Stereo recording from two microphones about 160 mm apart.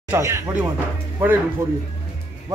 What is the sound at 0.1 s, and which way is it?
Speech, 15° right (ahead or behind).